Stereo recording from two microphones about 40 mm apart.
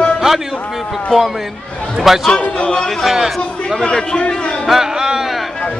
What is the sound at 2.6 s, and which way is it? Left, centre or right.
Speech, centre.